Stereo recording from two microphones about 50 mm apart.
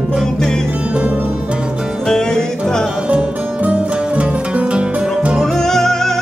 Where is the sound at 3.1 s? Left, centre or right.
Right.